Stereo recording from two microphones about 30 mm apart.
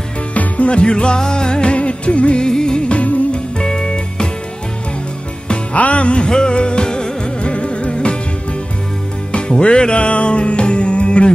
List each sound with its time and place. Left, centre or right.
0.3 s music: left
2.4 s music: left
2.9 s music: left
3.5 s music: left
5.8 s music: left
6.2 s music: left
9.6 s music: left